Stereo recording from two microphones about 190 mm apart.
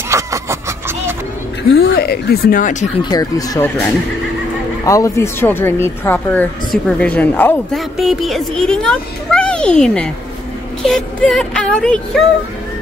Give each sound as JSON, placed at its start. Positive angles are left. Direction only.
{"t": 0.1, "sound": "vehicle", "side_deg": -15}
{"t": 1.8, "sound": "speech", "side_deg": 55}
{"t": 3.0, "sound": "speech", "side_deg": 20}